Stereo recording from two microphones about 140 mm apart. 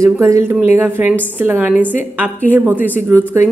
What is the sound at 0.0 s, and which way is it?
A woman's voice, 20° right (ahead or behind).